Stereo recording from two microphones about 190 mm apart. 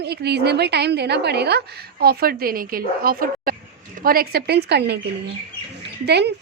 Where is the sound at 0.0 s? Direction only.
60° right (ahead or behind).